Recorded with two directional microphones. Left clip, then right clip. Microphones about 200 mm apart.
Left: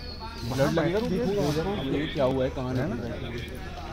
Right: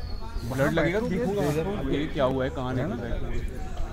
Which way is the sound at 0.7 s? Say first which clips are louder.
Right 1 dB; centre (ahead or behind).